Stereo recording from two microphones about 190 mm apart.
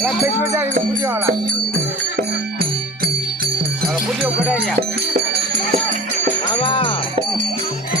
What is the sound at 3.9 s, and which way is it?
Music, centre (ahead or behind).